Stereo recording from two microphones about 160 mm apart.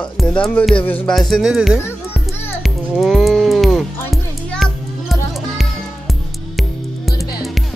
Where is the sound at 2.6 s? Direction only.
Centre (ahead or behind).